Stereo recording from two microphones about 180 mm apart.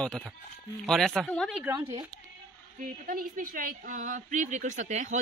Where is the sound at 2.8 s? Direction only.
50° right (ahead or behind).